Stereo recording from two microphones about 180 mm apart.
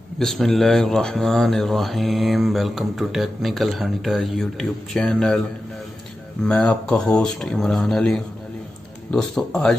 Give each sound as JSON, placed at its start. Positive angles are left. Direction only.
{"t": 0.2, "sound": "speech", "side_deg": 0}
{"t": 6.4, "sound": "speech", "side_deg": 5}